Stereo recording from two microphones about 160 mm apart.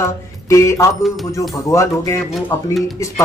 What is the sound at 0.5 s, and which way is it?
Speech, 20° left (ahead or behind).